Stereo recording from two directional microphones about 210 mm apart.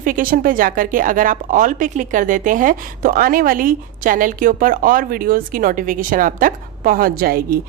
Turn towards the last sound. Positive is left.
turn(degrees=-45)  # may be behind; listen again after turning